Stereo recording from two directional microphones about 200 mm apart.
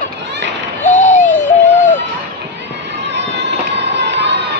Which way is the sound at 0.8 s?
35° left (ahead or behind).